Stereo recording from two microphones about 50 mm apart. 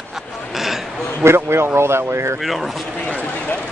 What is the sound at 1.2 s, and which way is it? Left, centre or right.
Speech, right.